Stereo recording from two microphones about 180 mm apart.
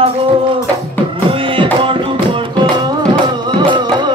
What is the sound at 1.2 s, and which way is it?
Beatboxing, 30° right (ahead or behind).